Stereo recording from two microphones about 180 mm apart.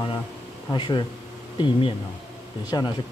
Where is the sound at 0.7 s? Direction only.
25° left (ahead or behind).